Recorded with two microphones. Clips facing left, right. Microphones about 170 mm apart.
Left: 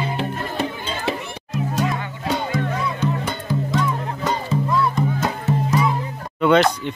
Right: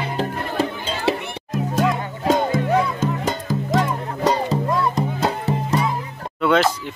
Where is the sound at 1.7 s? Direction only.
65° right (ahead or behind).